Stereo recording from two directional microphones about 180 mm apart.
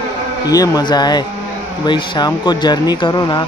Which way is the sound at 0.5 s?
20° left (ahead or behind).